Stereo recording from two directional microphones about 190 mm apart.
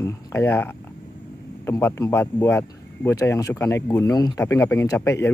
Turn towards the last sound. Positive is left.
turn(degrees=15)  # may be behind; listen again after turning